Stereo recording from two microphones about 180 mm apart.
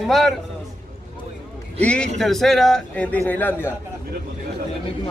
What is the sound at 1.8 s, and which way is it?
Speech, 5° left (ahead or behind).